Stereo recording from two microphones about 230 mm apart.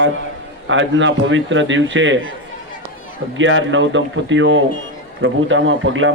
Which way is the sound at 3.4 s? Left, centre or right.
Right.